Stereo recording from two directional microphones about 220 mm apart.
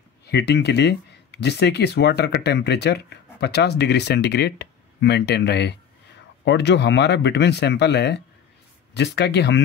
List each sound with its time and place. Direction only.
0.3 s speech: 50° left (ahead or behind)